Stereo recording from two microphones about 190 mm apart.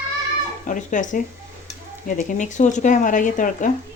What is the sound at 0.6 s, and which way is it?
Speech, 40° left (ahead or behind).